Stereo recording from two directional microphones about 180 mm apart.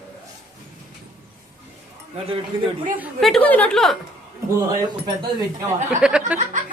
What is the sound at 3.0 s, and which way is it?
A woman's voice, centre (ahead or behind).